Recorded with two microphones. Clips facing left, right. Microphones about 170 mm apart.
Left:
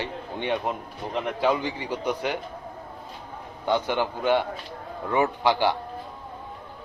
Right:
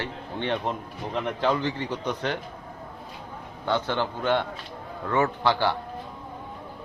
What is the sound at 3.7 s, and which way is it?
A man's voice, 15° left (ahead or behind).